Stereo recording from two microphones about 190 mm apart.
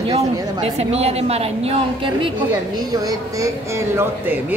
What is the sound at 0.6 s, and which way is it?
A woman's voice, 35° right (ahead or behind).